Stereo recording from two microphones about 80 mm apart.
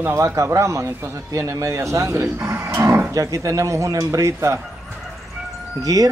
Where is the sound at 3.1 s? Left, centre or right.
Right.